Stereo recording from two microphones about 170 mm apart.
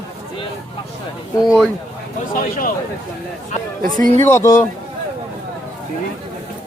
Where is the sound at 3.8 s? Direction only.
55° right (ahead or behind).